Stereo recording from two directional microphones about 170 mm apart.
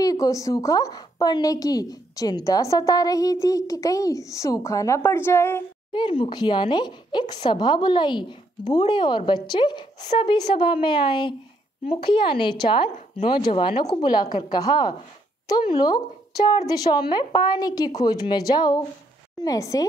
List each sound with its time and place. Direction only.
0.0 s a woman's voice: 20° left (ahead or behind)
5.9 s a woman's voice: 30° left (ahead or behind)